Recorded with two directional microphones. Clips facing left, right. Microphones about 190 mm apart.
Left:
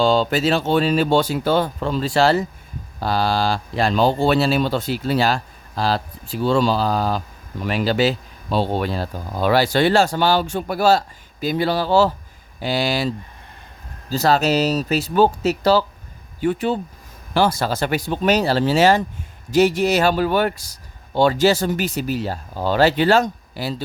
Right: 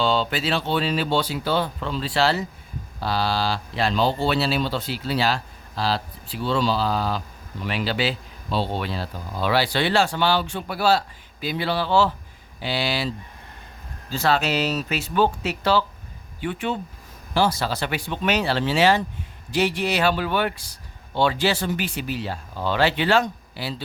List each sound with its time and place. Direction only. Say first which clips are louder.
0.0 s speech: left 6 dB; 45° left (ahead or behind)
14.1 s speech: left 5 dB; 40° left (ahead or behind)
17.3 s speech: left 3 dB; 55° left (ahead or behind)